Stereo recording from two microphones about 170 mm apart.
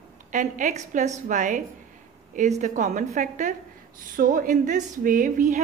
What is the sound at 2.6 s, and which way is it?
Speech, 45° right (ahead or behind).